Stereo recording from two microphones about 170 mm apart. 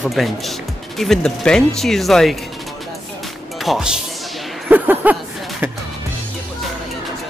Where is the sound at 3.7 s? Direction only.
5° right (ahead or behind).